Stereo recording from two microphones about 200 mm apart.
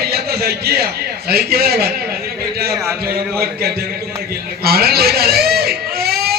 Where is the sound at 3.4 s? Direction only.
50° right (ahead or behind).